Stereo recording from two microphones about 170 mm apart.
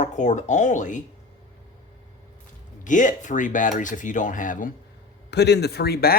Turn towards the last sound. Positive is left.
turn(degrees=65)  # may be behind; listen again after turning